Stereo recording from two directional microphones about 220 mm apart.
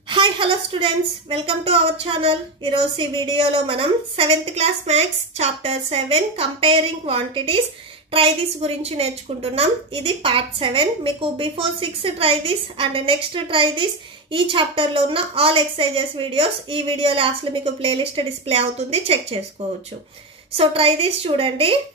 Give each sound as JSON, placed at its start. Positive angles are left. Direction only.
{"t": 0.1, "sound": "a woman's voice", "side_deg": -25}
{"t": 20.5, "sound": "a woman's voice", "side_deg": -25}